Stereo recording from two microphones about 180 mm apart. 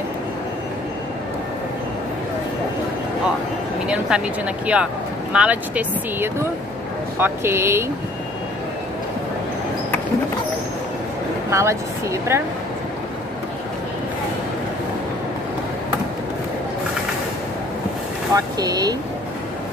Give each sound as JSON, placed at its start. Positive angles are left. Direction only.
{"t": 3.8, "sound": "speech", "side_deg": -5}
{"t": 5.3, "sound": "speech", "side_deg": -5}
{"t": 11.5, "sound": "speech", "side_deg": -15}
{"t": 18.3, "sound": "speech", "side_deg": -20}